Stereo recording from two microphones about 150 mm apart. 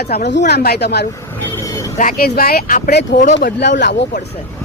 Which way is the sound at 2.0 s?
75° left (ahead or behind).